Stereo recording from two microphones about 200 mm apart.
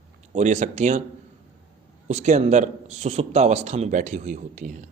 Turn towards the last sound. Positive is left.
turn(degrees=-40)  # may be behind; listen again after turning